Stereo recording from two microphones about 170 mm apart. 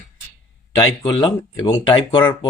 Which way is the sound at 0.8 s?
25° left (ahead or behind).